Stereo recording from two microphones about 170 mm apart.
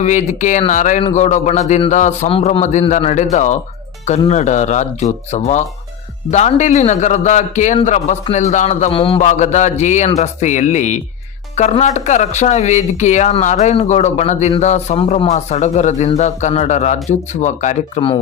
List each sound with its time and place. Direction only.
0.0 s speech: 45° left (ahead or behind)